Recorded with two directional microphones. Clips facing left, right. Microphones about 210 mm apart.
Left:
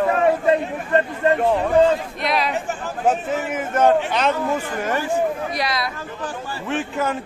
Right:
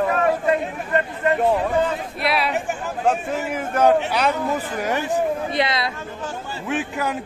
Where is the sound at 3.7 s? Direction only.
10° right (ahead or behind); by 5.9 s 25° right (ahead or behind).